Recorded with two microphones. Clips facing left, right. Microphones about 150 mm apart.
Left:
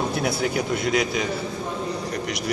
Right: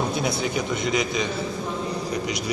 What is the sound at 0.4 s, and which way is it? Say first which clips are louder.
Speech: left 2 dB; 70° left (ahead or behind).